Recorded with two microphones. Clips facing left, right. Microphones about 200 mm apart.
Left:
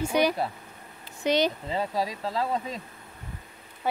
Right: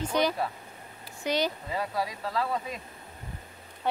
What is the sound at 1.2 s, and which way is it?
Speech, 20° left (ahead or behind).